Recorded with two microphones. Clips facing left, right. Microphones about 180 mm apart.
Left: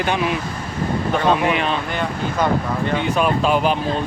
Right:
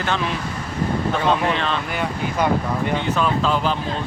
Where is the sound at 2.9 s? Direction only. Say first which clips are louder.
Left 4 dB; 15° left (ahead or behind).